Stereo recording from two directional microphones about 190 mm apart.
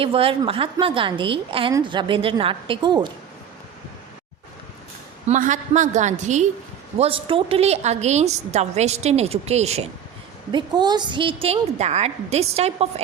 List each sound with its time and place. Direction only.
0.0 s a woman's voice: 30° right (ahead or behind)
5.3 s a woman's voice: 40° right (ahead or behind)
10.5 s a woman's voice: 20° right (ahead or behind)